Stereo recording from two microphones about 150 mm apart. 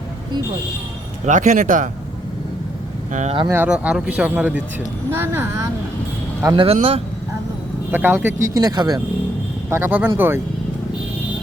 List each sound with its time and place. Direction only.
1.2 s speech: 55° right (ahead or behind)
3.1 s speech: 55° right (ahead or behind)
3.5 s speech: 10° right (ahead or behind)
6.7 s speech: 40° right (ahead or behind)
7.9 s speech: 15° right (ahead or behind)
8.5 s speech: 25° right (ahead or behind)
9.6 s speech: 15° right (ahead or behind)